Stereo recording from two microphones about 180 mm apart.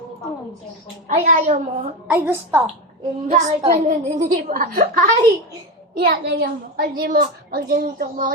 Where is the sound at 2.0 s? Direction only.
10° right (ahead or behind).